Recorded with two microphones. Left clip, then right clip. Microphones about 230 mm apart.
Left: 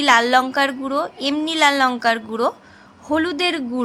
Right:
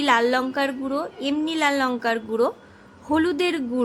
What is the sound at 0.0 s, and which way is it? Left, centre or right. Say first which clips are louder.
A woman's voice: left 5 dB; centre.